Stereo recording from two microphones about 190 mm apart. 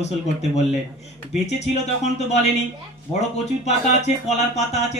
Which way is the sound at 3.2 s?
35° left (ahead or behind).